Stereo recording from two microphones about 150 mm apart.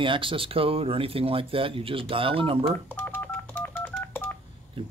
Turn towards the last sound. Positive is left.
turn(degrees=-35)  # may be behind; listen again after turning